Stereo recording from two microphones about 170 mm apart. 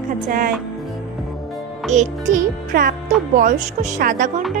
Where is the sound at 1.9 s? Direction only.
45° right (ahead or behind).